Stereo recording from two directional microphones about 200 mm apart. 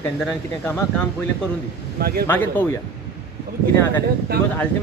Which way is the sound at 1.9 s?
50° right (ahead or behind).